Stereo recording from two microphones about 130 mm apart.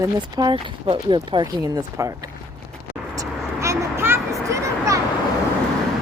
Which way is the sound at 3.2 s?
25° right (ahead or behind).